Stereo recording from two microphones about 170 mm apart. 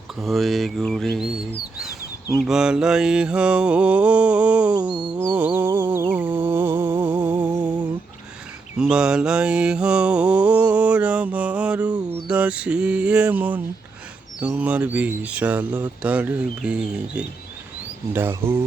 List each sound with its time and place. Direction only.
0.2 s mantra: centre (ahead or behind)
2.4 s speech: 5° right (ahead or behind)
5.0 s music: 10° right (ahead or behind)
8.8 s mantra: 5° right (ahead or behind)
12.3 s speech: 5° right (ahead or behind)